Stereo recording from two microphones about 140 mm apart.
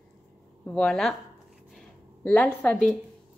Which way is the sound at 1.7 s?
5° left (ahead or behind).